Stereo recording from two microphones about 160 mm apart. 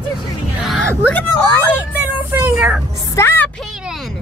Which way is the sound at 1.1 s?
10° left (ahead or behind).